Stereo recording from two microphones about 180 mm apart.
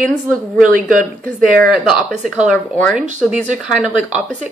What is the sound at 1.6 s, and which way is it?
Speech, centre (ahead or behind).